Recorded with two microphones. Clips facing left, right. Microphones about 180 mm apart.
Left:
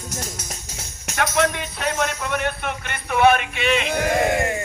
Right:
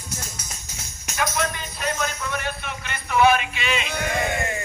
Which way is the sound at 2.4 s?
60° left (ahead or behind).